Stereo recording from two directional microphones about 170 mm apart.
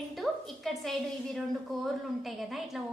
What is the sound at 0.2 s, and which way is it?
A woman's voice, centre (ahead or behind).